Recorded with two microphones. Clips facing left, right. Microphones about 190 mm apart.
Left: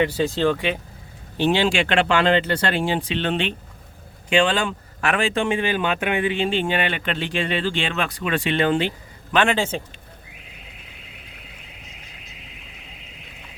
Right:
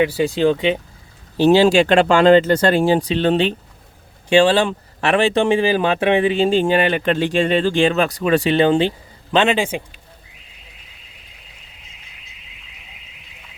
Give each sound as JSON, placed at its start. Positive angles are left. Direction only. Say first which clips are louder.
{"t": 0.0, "sound": "speech", "louder": "right 4 dB", "side_deg": -10}
{"t": 1.4, "sound": "speech", "louder": "right 8 dB", "side_deg": -40}